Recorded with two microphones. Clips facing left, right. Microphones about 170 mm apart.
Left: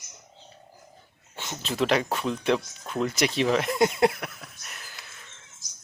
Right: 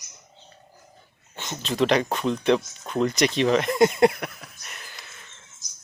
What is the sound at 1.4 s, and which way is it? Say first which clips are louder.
Speech: right 3 dB; 5° left (ahead or behind).